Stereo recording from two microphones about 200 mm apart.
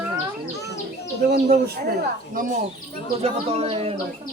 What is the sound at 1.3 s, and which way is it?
Speech, 50° right (ahead or behind).